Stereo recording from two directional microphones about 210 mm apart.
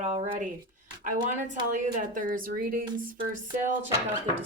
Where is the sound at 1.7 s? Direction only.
40° right (ahead or behind).